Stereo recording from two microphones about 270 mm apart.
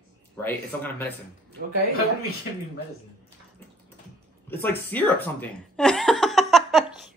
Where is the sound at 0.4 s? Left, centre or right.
Centre.